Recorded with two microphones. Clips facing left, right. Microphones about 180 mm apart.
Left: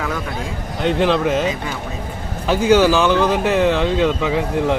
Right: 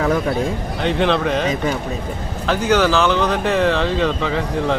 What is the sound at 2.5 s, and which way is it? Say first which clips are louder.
Speech: left 3 dB; 15° left (ahead or behind).